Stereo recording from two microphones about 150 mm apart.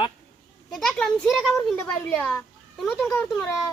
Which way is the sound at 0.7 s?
5° left (ahead or behind).